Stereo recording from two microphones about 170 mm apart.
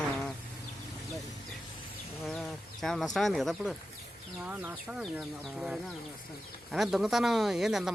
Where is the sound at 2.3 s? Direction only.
Centre (ahead or behind).